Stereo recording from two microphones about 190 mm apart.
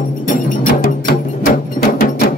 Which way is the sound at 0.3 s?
50° left (ahead or behind).